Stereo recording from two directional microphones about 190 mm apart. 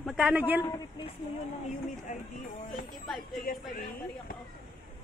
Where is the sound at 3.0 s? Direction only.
Centre (ahead or behind).